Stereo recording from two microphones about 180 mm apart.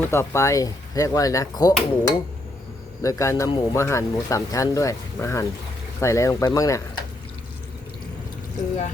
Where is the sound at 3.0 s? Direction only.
15° left (ahead or behind).